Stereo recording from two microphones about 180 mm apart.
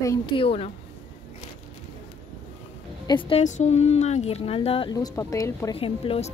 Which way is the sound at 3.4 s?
40° left (ahead or behind).